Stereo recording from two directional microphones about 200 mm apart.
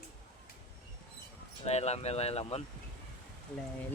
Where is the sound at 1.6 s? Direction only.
30° left (ahead or behind).